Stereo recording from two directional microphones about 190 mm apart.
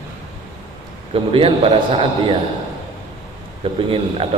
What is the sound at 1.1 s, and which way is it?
Speech, 30° right (ahead or behind).